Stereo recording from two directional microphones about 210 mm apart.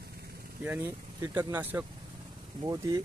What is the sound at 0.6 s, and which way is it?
Speech, 10° right (ahead or behind).